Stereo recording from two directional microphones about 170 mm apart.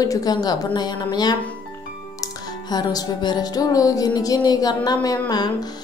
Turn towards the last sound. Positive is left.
turn(degrees=25)  # may be behind; listen again after turning